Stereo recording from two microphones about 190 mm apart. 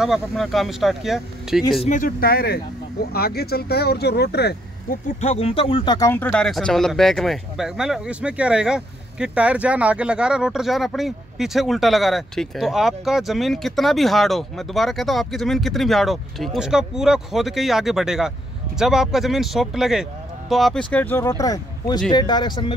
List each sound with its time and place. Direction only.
0.0 s speech: centre (ahead or behind)
1.9 s speech: 45° left (ahead or behind)
5.2 s speech: 35° left (ahead or behind)
5.9 s speech: 10° left (ahead or behind)